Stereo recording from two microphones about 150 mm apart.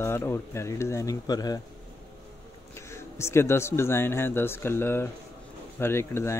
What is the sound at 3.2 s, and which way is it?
Speech, 15° left (ahead or behind).